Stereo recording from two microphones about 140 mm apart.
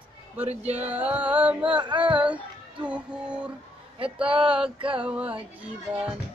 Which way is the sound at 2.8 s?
10° right (ahead or behind).